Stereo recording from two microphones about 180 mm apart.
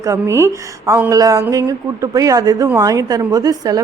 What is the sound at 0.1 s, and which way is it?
A woman's voice, 15° right (ahead or behind).